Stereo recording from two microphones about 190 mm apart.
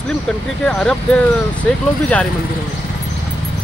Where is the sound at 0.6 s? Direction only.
5° left (ahead or behind).